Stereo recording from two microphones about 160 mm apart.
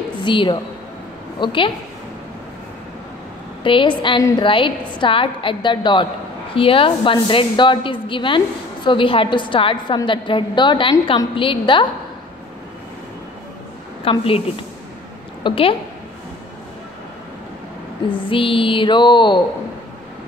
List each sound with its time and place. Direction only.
0.2 s a woman's voice: 30° left (ahead or behind)
3.6 s a woman's voice: 30° left (ahead or behind)
14.1 s a woman's voice: 35° left (ahead or behind)
15.4 s a woman's voice: 35° left (ahead or behind)
18.1 s a woman's voice: 35° left (ahead or behind)